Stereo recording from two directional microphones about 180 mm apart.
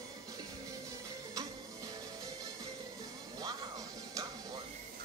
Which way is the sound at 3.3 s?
20° right (ahead or behind).